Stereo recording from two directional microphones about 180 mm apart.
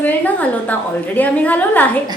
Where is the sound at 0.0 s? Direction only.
10° left (ahead or behind).